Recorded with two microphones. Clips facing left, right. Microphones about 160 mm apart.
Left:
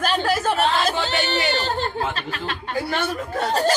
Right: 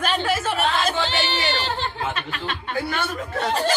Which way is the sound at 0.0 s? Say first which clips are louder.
Left 2 dB; 40° left (ahead or behind).